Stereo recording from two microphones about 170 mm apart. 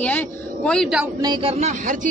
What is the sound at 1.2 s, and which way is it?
Speech, 30° right (ahead or behind).